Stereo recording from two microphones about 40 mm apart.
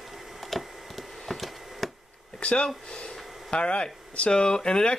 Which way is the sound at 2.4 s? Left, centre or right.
Left.